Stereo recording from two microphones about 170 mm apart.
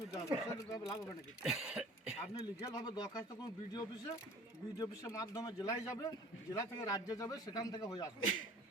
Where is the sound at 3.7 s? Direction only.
25° left (ahead or behind).